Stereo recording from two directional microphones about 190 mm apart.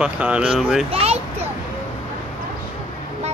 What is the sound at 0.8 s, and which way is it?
Speech, 30° right (ahead or behind).